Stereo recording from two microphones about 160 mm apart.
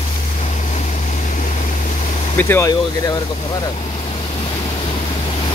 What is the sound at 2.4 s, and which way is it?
Speech, 15° left (ahead or behind).